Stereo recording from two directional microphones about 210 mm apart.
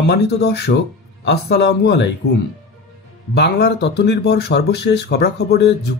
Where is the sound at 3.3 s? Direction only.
50° left (ahead or behind).